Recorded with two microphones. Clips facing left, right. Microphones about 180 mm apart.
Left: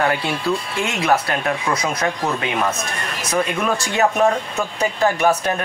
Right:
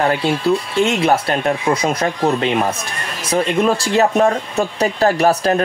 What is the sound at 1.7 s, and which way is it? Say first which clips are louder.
Speech: right 4 dB; 30° right (ahead or behind).